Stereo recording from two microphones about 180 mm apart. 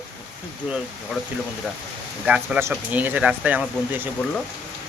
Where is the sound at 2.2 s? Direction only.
5° right (ahead or behind).